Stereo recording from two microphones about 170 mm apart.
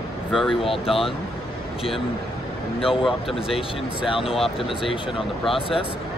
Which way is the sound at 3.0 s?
Centre (ahead or behind).